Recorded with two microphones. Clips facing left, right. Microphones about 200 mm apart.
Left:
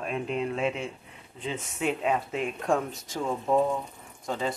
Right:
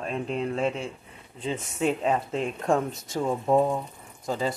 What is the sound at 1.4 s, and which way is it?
Speech, 35° right (ahead or behind).